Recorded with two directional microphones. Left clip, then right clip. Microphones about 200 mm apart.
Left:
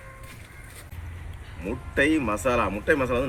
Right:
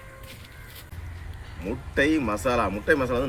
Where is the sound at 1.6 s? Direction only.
5° left (ahead or behind).